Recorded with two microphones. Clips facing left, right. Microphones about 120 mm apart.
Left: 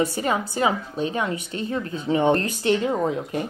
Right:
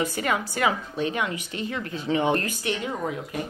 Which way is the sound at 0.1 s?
30° left (ahead or behind).